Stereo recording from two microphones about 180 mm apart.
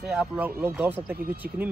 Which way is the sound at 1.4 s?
55° right (ahead or behind).